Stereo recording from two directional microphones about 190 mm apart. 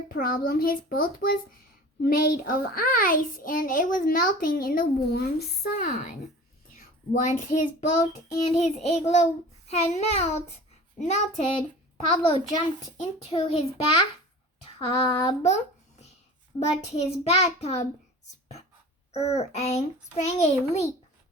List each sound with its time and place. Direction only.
0.1 s a child's voice: 50° left (ahead or behind); by 11.6 s 30° left (ahead or behind)
13.0 s a child's voice: 35° left (ahead or behind)
14.8 s child singing: 30° left (ahead or behind)
16.6 s a child's voice: 35° left (ahead or behind)
19.1 s a child's voice: 35° left (ahead or behind)